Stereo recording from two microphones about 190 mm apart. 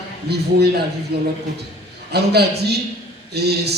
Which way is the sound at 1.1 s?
60° right (ahead or behind).